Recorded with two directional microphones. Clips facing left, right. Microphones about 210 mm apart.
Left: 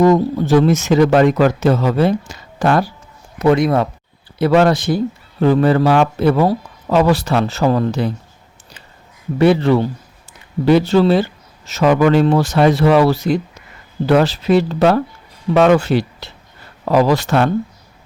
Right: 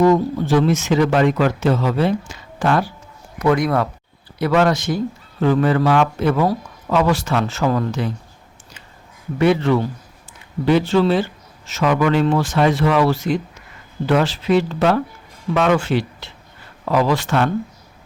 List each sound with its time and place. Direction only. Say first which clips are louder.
0.0 s speech: left 2 dB; 40° left (ahead or behind)
3.3 s a man's voice: left 4 dB; 25° left (ahead or behind)
9.4 s speech: left 3 dB; 35° left (ahead or behind)